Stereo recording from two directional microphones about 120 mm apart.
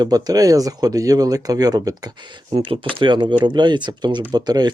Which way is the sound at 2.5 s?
45° right (ahead or behind).